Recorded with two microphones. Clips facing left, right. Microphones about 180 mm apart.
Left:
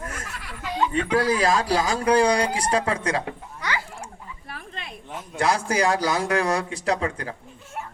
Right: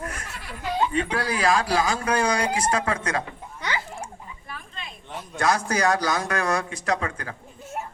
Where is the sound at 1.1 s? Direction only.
40° left (ahead or behind).